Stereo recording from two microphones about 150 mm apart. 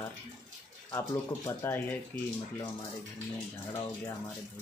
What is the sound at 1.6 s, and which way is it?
Speech, 15° left (ahead or behind).